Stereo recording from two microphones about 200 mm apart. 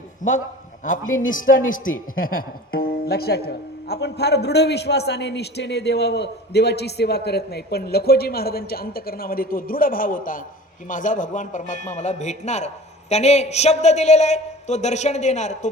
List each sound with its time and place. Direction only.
0.2 s a man's voice: 40° left (ahead or behind)